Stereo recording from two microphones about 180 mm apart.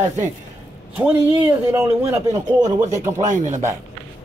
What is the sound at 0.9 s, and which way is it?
Speech, 10° right (ahead or behind).